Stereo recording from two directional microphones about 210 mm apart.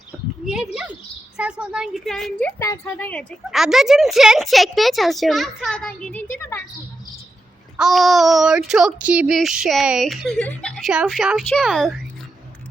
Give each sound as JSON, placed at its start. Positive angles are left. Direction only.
{"t": 0.4, "sound": "speech", "side_deg": -5}
{"t": 6.3, "sound": "a sound", "side_deg": 10}
{"t": 7.8, "sound": "speech", "side_deg": 0}